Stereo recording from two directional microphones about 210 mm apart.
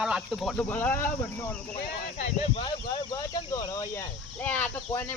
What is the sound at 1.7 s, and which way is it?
Speech, 30° left (ahead or behind).